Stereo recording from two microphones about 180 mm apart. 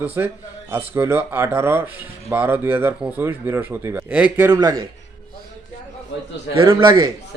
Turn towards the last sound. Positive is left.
turn(degrees=-25)  # may be behind; listen again after turning